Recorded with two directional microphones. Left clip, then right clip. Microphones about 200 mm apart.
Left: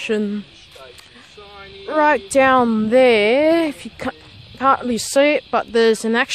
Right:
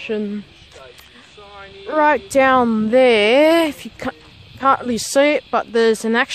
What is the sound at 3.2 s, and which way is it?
Speech, 20° right (ahead or behind).